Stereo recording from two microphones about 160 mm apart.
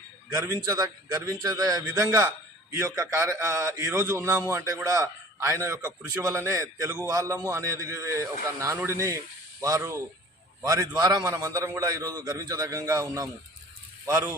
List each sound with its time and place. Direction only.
0.3 s a man's voice: 20° right (ahead or behind)